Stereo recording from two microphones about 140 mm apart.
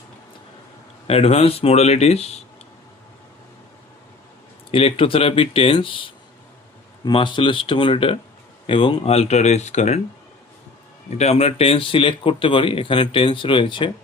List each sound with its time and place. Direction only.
1.0 s speech: 45° left (ahead or behind)
4.7 s speech: 40° left (ahead or behind)
11.2 s speech: 50° left (ahead or behind)